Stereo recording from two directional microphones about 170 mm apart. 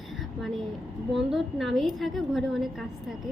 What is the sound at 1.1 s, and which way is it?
A woman's voice, centre (ahead or behind).